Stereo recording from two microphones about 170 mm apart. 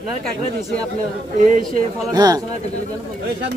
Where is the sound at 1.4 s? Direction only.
55° right (ahead or behind).